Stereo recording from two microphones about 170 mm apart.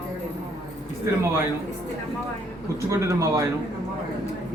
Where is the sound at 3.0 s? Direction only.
20° right (ahead or behind).